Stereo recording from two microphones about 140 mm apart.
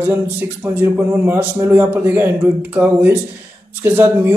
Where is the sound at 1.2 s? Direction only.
15° right (ahead or behind).